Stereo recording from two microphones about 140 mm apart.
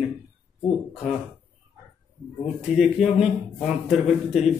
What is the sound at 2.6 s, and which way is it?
Speech, 5° right (ahead or behind).